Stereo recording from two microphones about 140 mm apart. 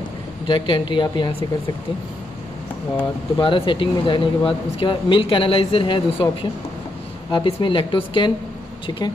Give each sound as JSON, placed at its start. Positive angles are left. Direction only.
{"t": 0.5, "sound": "speech", "side_deg": 35}
{"t": 3.3, "sound": "speech", "side_deg": 40}